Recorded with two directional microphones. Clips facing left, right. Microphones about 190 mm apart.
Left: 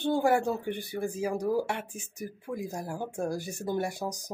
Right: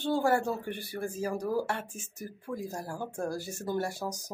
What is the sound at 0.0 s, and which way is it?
Speech, 15° left (ahead or behind).